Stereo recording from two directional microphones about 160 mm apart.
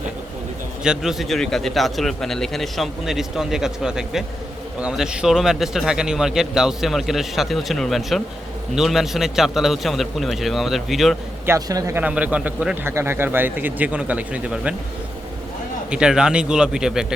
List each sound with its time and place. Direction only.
0.9 s a man's voice: centre (ahead or behind)
11.4 s a man's voice: 20° right (ahead or behind)
15.9 s a man's voice: 5° right (ahead or behind)